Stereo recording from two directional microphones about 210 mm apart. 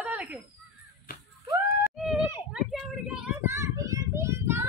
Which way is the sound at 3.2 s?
10° right (ahead or behind).